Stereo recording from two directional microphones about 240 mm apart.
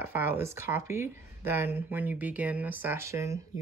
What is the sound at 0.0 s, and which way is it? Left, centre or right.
Speech, centre.